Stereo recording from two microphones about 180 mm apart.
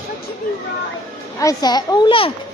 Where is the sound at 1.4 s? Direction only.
20° left (ahead or behind).